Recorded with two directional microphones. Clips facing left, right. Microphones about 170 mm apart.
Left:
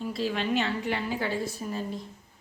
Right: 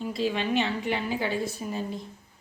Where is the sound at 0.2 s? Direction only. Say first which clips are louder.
Right 2 dB; 20° right (ahead or behind).